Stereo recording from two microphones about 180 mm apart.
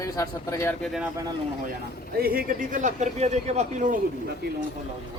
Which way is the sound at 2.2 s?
55° right (ahead or behind).